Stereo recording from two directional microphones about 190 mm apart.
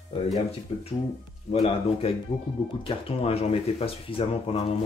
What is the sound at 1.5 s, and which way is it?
Speech, 30° left (ahead or behind).